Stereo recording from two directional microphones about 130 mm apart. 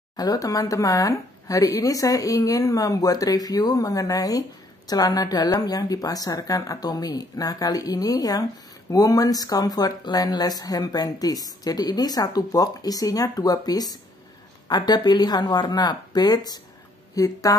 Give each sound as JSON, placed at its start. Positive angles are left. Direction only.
{"t": 0.1, "sound": "speech", "side_deg": 30}